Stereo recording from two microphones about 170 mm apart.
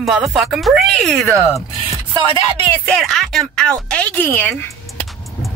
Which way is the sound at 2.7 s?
5° left (ahead or behind).